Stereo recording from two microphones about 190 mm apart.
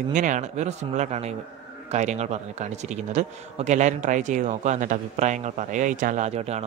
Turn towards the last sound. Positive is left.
turn(degrees=-35)  # may be behind; listen again after turning